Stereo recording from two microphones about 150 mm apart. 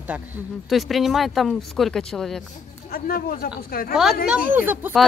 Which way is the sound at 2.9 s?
75° left (ahead or behind).